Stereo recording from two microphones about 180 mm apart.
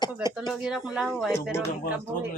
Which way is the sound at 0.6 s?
5° right (ahead or behind).